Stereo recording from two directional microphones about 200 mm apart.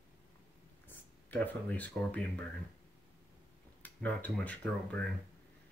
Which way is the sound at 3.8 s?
10° left (ahead or behind).